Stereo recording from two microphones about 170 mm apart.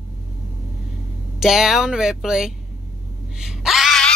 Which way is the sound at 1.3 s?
5° right (ahead or behind).